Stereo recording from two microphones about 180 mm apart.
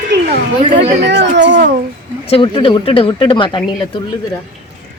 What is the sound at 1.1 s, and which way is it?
Speech, 80° right.